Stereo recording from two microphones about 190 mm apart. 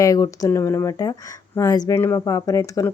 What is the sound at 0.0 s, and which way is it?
Speech, 15° left (ahead or behind).